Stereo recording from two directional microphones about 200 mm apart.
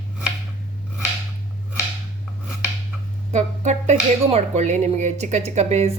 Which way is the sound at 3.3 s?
35° right (ahead or behind).